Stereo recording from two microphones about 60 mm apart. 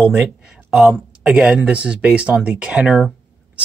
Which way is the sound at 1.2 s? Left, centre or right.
Centre.